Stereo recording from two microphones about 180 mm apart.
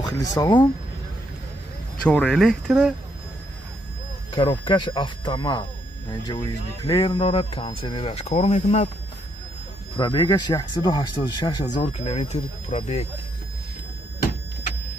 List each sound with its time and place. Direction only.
0.0 s speech: 20° left (ahead or behind)
2.0 s speech: centre (ahead or behind)
4.4 s speech: 25° left (ahead or behind)
9.9 s speech: 25° left (ahead or behind)
12.0 s speech: 35° left (ahead or behind)